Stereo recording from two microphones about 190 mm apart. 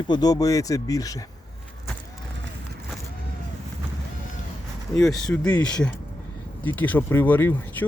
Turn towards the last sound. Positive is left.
turn(degrees=10)  # may be behind; listen again after turning